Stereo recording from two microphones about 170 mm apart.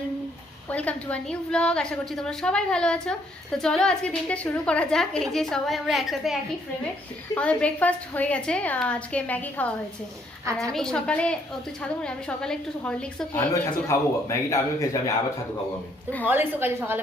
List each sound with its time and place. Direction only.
0.7 s a woman's voice: 10° left (ahead or behind)
13.5 s a woman's voice: 15° left (ahead or behind)
16.2 s a woman's voice: 10° right (ahead or behind)